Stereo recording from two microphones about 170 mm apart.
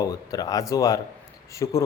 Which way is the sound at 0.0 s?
20° left (ahead or behind).